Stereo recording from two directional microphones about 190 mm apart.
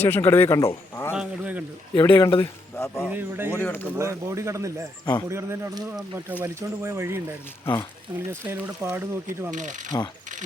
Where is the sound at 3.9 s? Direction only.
15° right (ahead or behind).